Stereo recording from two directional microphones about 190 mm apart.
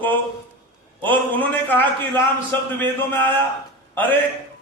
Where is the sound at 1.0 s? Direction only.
10° left (ahead or behind).